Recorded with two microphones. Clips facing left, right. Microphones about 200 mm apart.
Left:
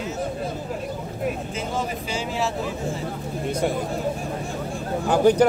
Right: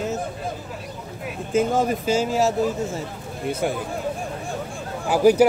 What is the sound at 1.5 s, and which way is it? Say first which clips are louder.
Speech: right 8 dB; 50° right (ahead or behind).